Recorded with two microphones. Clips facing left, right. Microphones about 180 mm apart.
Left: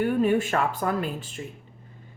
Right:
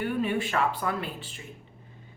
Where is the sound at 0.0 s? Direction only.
45° left (ahead or behind).